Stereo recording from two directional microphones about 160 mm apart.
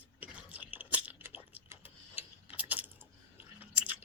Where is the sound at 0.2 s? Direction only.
10° right (ahead or behind).